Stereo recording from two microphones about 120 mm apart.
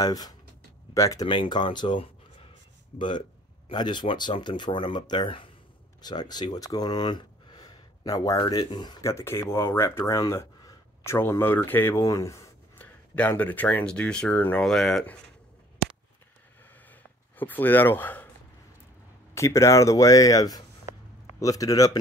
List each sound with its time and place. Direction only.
0.0 s speech: 30° left (ahead or behind)
1.2 s speech: 45° left (ahead or behind)
9.0 s speech: 20° left (ahead or behind)
12.0 s a sound: 25° left (ahead or behind)
13.4 s speech: 15° left (ahead or behind)
14.6 s speech: centre (ahead or behind)
16.9 s a sound: 15° left (ahead or behind)
19.3 s speech: 25° left (ahead or behind)